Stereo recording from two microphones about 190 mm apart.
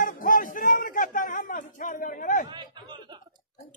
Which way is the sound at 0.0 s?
45° left (ahead or behind).